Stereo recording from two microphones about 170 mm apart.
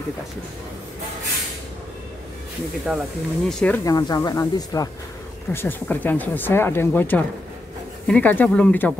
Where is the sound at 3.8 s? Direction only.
20° left (ahead or behind).